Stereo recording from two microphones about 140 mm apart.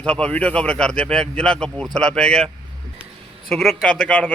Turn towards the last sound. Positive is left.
turn(degrees=10)  # may be behind; listen again after turning